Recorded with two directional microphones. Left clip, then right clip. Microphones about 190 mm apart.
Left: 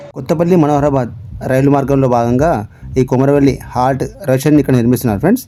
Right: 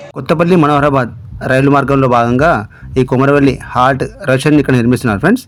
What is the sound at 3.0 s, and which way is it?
Speech, 25° right (ahead or behind).